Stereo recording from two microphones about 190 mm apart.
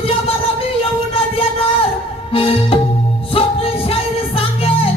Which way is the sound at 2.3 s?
30° left (ahead or behind).